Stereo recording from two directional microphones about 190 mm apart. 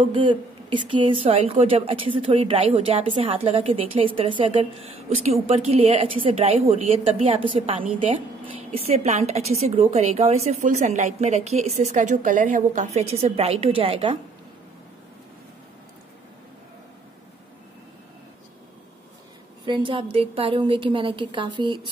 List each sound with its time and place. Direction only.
0.0 s a woman's voice: 25° right (ahead or behind)
19.6 s a woman's voice: 25° right (ahead or behind)